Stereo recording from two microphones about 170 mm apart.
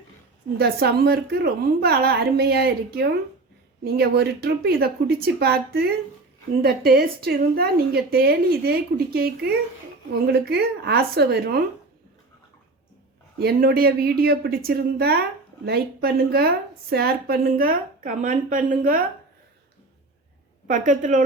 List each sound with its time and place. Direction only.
0.6 s a woman's voice: 70° right (ahead or behind)
13.4 s a woman's voice: 65° right (ahead or behind)
20.7 s a woman's voice: 50° right (ahead or behind)